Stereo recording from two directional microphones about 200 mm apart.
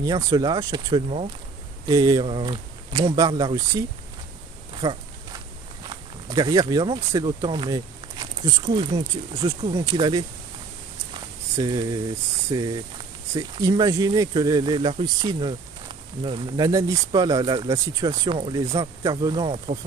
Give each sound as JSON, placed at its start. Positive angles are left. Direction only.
{"t": 0.0, "sound": "speech", "side_deg": -20}
{"t": 4.8, "sound": "speech", "side_deg": -15}
{"t": 11.5, "sound": "speech", "side_deg": -20}
{"t": 18.3, "sound": "speech", "side_deg": -25}